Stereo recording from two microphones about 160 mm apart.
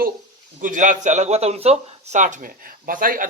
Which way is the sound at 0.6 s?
55° right (ahead or behind).